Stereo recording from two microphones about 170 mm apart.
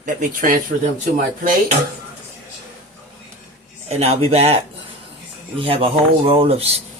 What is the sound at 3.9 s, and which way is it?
Speech, 40° right (ahead or behind).